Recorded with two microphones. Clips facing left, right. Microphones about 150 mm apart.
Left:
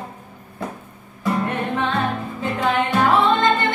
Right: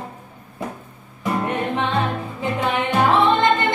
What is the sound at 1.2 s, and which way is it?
Music, 20° right (ahead or behind).